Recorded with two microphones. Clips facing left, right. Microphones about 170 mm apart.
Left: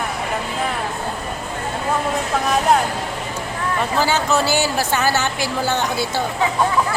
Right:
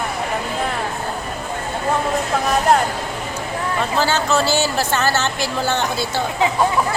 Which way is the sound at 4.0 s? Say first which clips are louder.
Even; 15° left (ahead or behind).